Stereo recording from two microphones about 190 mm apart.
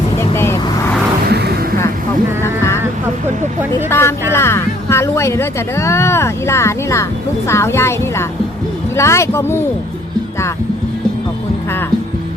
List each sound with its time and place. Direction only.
0.2 s vehicle: 15° left (ahead or behind)
1.3 s music: 60° right (ahead or behind)
2.4 s a sound: 15° left (ahead or behind)
3.8 s speech: 10° left (ahead or behind)